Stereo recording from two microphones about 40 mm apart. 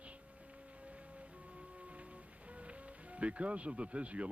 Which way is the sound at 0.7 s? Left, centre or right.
Right.